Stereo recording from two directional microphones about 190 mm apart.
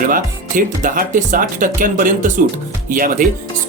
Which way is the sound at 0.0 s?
45° right (ahead or behind).